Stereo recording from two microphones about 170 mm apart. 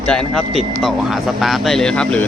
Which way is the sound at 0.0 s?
5° left (ahead or behind).